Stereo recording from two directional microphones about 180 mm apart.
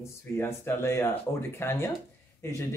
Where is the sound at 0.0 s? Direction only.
15° left (ahead or behind).